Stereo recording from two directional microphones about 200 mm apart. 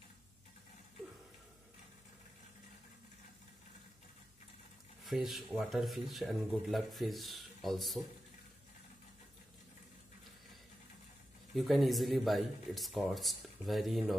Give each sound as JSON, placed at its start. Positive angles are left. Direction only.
{"t": 5.0, "sound": "speech", "side_deg": 0}
{"t": 11.5, "sound": "speech", "side_deg": 0}